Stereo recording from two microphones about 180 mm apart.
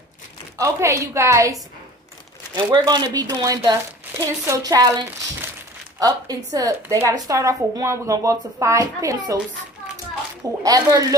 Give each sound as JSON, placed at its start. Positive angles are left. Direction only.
{"t": 0.6, "sound": "a woman's voice", "side_deg": -15}
{"t": 10.6, "sound": "speech", "side_deg": -20}